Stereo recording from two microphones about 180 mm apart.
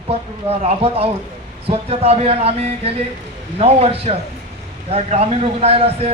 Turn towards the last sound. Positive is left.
turn(degrees=-35)  # may be behind; listen again after turning